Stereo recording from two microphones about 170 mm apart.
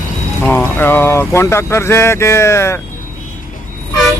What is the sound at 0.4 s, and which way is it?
Speech, 10° left (ahead or behind).